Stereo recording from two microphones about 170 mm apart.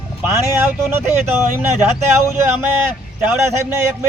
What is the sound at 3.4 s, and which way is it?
Speech, 15° right (ahead or behind).